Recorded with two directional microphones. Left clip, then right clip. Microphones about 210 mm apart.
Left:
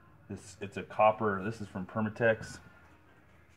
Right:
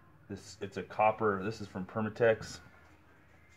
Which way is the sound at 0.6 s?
15° right (ahead or behind).